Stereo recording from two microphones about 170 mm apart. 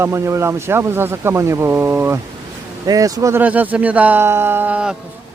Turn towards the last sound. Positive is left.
turn(degrees=-5)  # may be behind; listen again after turning